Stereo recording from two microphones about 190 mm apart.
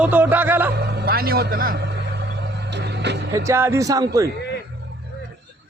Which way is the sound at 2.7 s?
60° right (ahead or behind).